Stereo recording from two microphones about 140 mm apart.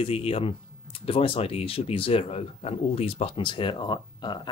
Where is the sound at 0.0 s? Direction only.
40° left (ahead or behind).